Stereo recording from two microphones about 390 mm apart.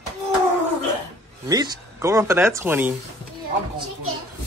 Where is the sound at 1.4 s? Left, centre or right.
Centre.